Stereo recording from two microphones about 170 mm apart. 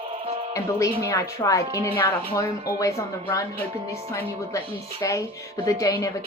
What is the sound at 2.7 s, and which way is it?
A woman's voice, 20° left (ahead or behind).